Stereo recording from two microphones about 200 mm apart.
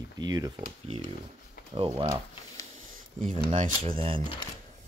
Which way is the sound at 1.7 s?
25° right (ahead or behind).